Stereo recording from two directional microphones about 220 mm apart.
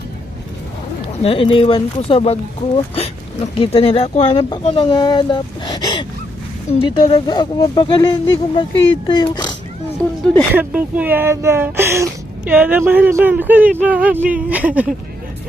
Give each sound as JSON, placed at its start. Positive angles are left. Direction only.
{"t": 1.2, "sound": "speech", "side_deg": 25}
{"t": 6.7, "sound": "speech", "side_deg": 20}
{"t": 10.5, "sound": "speech", "side_deg": -10}